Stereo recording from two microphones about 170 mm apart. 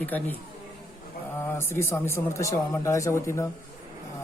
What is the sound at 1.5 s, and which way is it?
Speech, 15° left (ahead or behind).